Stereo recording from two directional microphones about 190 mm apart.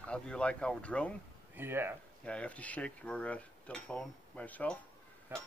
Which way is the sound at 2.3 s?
5° left (ahead or behind).